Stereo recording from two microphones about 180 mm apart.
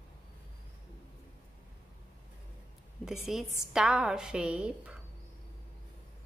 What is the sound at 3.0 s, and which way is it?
A woman's voice, centre (ahead or behind).